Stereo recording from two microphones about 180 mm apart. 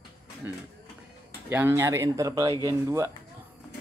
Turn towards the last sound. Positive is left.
turn(degrees=-15)  # may be behind; listen again after turning